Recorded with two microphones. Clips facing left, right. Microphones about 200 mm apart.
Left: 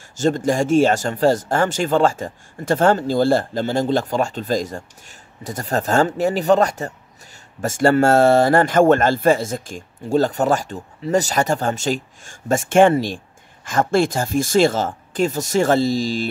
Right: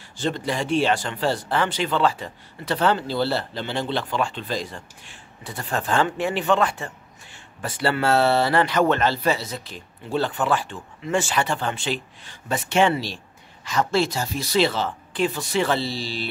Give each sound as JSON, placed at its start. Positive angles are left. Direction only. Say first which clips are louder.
{"t": 0.2, "sound": "speech", "louder": "left 7 dB", "side_deg": 45}